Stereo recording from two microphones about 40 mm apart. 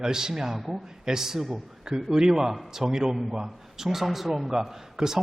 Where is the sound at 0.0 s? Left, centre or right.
Centre.